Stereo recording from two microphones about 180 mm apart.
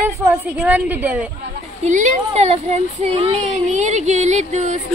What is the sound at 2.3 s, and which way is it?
Speech, 35° right (ahead or behind).